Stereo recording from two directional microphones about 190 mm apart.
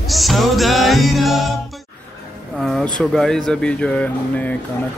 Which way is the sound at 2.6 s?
Centre (ahead or behind).